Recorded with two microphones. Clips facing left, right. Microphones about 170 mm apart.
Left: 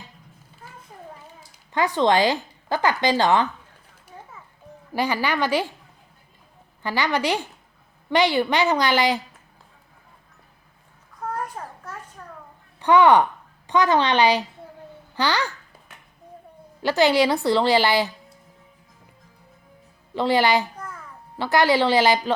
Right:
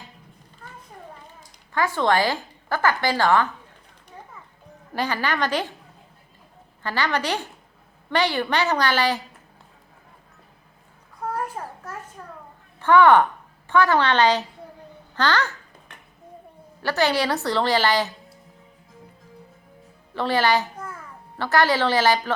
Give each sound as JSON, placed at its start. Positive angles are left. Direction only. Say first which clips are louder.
{"t": 1.7, "sound": "a woman's voice", "louder": "left 2 dB", "side_deg": 20}
{"t": 4.9, "sound": "a woman's voice", "louder": "left 2 dB", "side_deg": 10}
{"t": 6.8, "sound": "a woman's voice", "louder": "left 2 dB", "side_deg": 15}
{"t": 11.2, "sound": "babbling", "louder": "right 1 dB", "side_deg": -10}
{"t": 12.2, "sound": "a sound", "louder": "right 1 dB", "side_deg": -10}
{"t": 12.8, "sound": "a woman's voice", "louder": "even", "side_deg": 15}
{"t": 15.9, "sound": "a sound", "louder": "right 1 dB", "side_deg": 5}
{"t": 16.8, "sound": "a woman's voice", "louder": "left 4 dB", "side_deg": 15}
{"t": 20.1, "sound": "a woman's voice", "louder": "left 2 dB", "side_deg": 15}
{"t": 20.7, "sound": "a sound", "louder": "right 1 dB", "side_deg": -10}
{"t": 21.3, "sound": "a woman's voice", "louder": "left 2 dB", "side_deg": 15}